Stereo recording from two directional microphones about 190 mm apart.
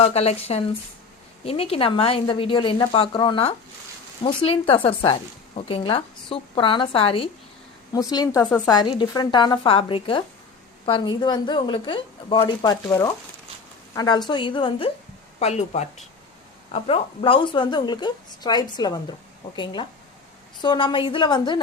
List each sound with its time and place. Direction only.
0.0 s a woman's voice: 35° left (ahead or behind)